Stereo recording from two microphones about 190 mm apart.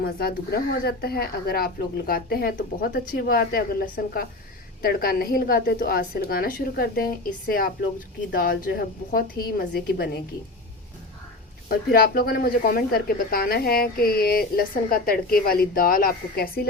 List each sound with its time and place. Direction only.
0.0 s speech: 55° left (ahead or behind)
11.7 s speech: 55° left (ahead or behind)